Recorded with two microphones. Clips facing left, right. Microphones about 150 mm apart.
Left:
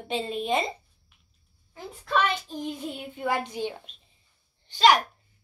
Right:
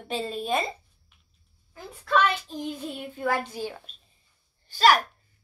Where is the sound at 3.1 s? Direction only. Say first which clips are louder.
Right 1 dB; 15° left (ahead or behind).